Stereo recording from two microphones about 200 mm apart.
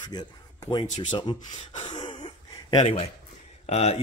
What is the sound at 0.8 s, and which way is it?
Speech, 35° left (ahead or behind).